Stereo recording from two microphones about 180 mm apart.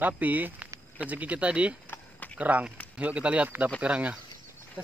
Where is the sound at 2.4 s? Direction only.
10° right (ahead or behind).